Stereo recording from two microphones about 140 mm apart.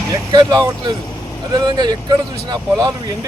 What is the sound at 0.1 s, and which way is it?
Speech, 30° right (ahead or behind).